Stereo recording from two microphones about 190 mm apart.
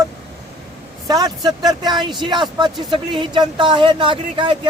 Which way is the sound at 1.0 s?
20° right (ahead or behind).